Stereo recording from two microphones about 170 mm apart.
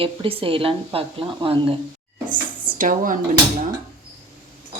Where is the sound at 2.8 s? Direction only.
55° right (ahead or behind).